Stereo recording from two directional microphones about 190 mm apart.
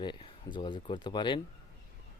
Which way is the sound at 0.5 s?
25° left (ahead or behind).